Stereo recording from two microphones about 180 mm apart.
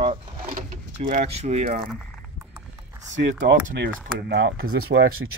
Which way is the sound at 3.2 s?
75° right (ahead or behind).